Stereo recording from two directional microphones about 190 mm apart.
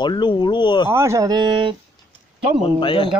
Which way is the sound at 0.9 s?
15° right (ahead or behind).